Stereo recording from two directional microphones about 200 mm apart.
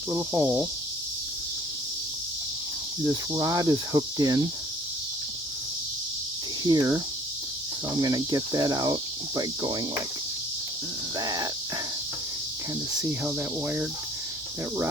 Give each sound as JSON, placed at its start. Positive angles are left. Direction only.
{"t": 0.1, "sound": "speech", "side_deg": -15}
{"t": 3.3, "sound": "speech", "side_deg": -15}
{"t": 6.7, "sound": "speech", "side_deg": -20}
{"t": 7.9, "sound": "cricket", "side_deg": -20}
{"t": 11.2, "sound": "speech", "side_deg": -20}
{"t": 13.0, "sound": "speech", "side_deg": -10}